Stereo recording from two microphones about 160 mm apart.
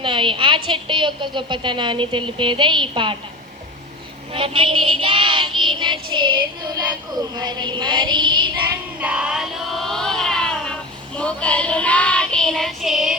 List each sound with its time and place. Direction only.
0.0 s a woman's voice: 30° right (ahead or behind)
4.3 s child singing: 35° right (ahead or behind)
9.0 s a sound: 5° right (ahead or behind)
11.2 s child singing: 5° left (ahead or behind)